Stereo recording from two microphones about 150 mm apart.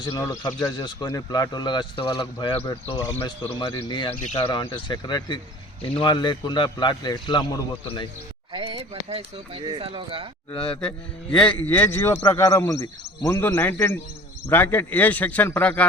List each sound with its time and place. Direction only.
0.0 s a man's voice: 25° left (ahead or behind)
8.5 s speech: 35° right (ahead or behind)
10.7 s a man's voice: 5° left (ahead or behind)